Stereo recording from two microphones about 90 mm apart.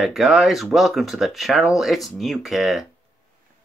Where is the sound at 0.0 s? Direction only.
5° right (ahead or behind).